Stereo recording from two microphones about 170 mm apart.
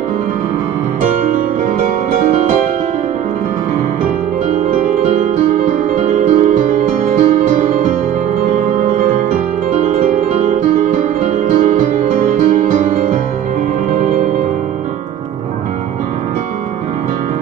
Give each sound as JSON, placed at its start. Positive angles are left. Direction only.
{"t": 5.7, "sound": "music", "side_deg": -50}
{"t": 10.5, "sound": "music", "side_deg": -50}